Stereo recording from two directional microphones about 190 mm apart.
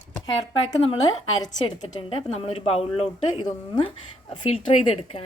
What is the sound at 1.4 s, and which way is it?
A woman's voice, 30° left (ahead or behind).